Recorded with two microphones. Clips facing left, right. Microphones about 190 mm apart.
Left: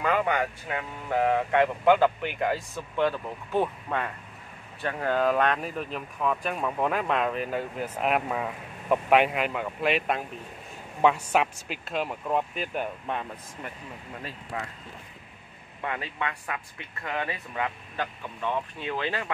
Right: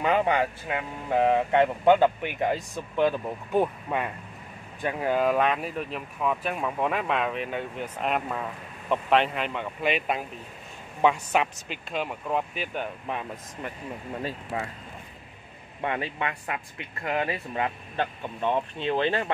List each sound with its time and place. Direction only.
0.0 s speech: 25° right (ahead or behind); by 13.2 s centre (ahead or behind)
14.2 s speech: 30° right (ahead or behind)
15.8 s speech: 25° right (ahead or behind)